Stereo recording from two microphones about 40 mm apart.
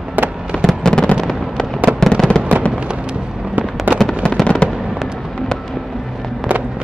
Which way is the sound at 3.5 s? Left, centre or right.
Right.